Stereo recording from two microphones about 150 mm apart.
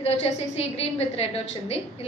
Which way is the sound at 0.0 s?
45° left (ahead or behind).